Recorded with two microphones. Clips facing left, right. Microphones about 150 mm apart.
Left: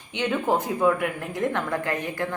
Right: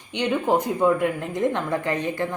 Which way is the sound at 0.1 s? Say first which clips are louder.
Right 2 dB; 20° right (ahead or behind).